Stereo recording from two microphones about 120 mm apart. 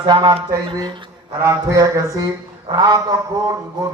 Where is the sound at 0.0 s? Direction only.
40° right (ahead or behind).